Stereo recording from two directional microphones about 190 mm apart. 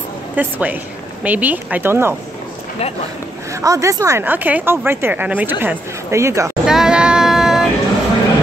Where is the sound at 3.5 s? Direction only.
15° right (ahead or behind).